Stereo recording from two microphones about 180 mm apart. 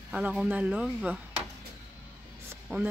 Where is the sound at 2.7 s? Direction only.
10° right (ahead or behind).